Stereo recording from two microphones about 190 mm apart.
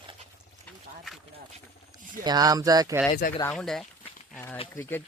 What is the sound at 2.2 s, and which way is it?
Speech, 20° right (ahead or behind).